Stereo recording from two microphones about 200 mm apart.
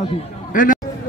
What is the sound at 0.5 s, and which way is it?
Speech, 40° left (ahead or behind).